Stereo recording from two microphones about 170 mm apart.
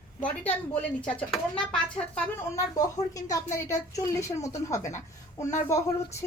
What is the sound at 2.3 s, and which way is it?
A child's voice, 20° left (ahead or behind).